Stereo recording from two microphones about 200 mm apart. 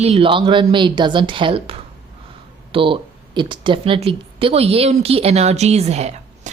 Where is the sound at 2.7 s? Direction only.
25° right (ahead or behind).